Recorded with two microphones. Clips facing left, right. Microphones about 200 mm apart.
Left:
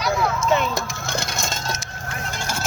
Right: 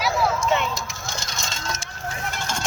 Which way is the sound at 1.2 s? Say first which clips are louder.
Left 6 dB; 50° left (ahead or behind).